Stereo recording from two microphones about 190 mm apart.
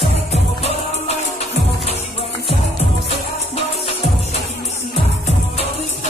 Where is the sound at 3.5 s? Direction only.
30° left (ahead or behind).